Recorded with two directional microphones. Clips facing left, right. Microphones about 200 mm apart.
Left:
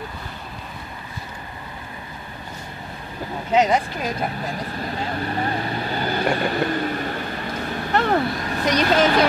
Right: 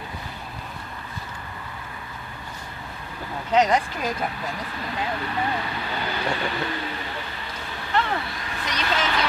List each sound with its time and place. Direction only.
3.5 s speech: 10° left (ahead or behind)
4.6 s speech: 40° left (ahead or behind)
6.3 s vehicle: 45° left (ahead or behind)